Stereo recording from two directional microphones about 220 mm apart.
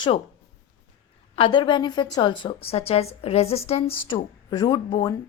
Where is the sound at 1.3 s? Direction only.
20° left (ahead or behind).